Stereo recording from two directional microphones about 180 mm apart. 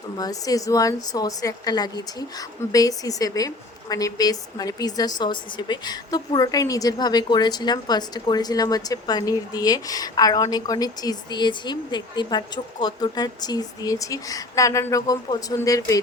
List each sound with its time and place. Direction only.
0.2 s a woman's voice: 20° left (ahead or behind)